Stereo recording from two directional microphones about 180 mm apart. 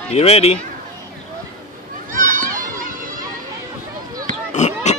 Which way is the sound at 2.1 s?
45° right (ahead or behind).